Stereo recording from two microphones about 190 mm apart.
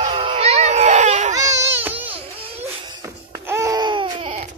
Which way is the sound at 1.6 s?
10° right (ahead or behind).